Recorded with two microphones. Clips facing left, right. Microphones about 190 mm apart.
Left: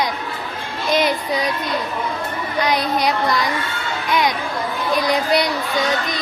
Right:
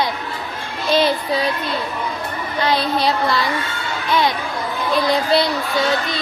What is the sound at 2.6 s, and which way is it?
Child singing, 15° left (ahead or behind).